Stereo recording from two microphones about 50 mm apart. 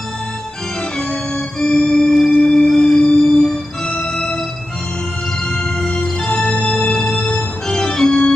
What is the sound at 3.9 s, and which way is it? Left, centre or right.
Organ, left.